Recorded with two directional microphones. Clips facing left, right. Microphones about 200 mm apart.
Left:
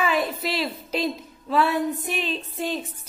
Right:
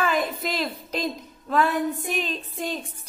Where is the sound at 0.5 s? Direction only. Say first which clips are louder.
Left 2 dB; 5° left (ahead or behind).